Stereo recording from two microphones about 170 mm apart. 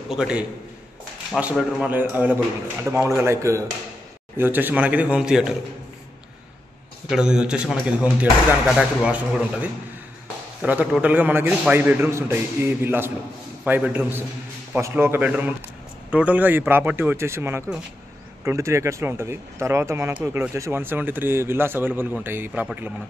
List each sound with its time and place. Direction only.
0.1 s a man's voice: 5° right (ahead or behind)
7.1 s a man's voice: 5° right (ahead or behind)
8.7 s speech: 5° right (ahead or behind)